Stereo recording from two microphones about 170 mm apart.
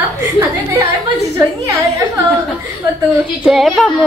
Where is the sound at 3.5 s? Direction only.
Centre (ahead or behind).